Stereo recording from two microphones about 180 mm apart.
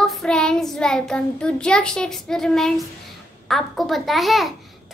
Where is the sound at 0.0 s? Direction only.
Centre (ahead or behind).